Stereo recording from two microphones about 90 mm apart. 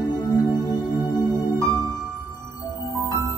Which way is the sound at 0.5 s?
50° left (ahead or behind).